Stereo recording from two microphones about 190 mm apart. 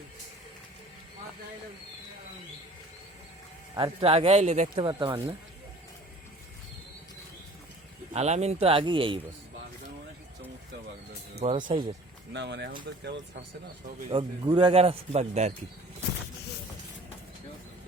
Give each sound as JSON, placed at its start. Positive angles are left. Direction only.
{"t": 4.0, "sound": "a man's voice", "side_deg": -30}
{"t": 4.7, "sound": "speech", "side_deg": -25}
{"t": 8.1, "sound": "speech", "side_deg": -35}
{"t": 11.3, "sound": "a man's voice", "side_deg": -30}
{"t": 12.3, "sound": "speech", "side_deg": -65}
{"t": 14.1, "sound": "a man's voice", "side_deg": -25}